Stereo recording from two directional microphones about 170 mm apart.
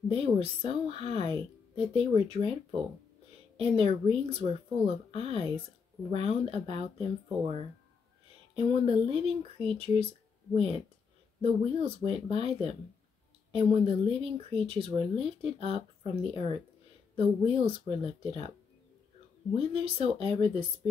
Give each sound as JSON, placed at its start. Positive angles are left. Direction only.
{"t": 0.1, "sound": "speech", "side_deg": -35}
{"t": 3.5, "sound": "speech", "side_deg": -35}
{"t": 11.4, "sound": "speech", "side_deg": -35}
{"t": 19.5, "sound": "speech", "side_deg": -35}